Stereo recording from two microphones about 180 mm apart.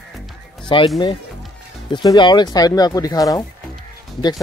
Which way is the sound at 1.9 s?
25° left (ahead or behind).